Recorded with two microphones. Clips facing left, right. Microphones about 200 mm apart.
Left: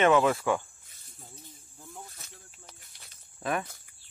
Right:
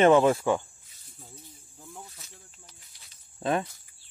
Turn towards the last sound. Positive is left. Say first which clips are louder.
# right 4 dB
turn(degrees=-30)  # may be behind; listen again after turning